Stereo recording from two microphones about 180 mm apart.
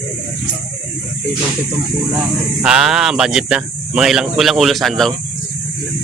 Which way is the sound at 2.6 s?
5° right (ahead or behind).